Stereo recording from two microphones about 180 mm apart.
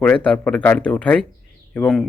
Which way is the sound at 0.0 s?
5° left (ahead or behind).